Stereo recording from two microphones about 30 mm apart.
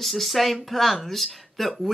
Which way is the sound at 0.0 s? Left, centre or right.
Centre.